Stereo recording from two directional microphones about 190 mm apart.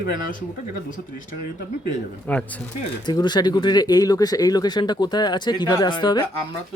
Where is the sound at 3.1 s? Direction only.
25° left (ahead or behind).